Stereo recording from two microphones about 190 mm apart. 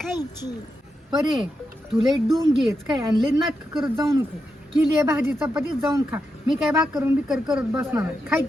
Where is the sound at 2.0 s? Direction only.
Centre (ahead or behind).